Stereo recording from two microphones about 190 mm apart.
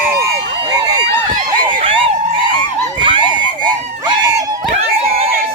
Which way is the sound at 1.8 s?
30° right (ahead or behind).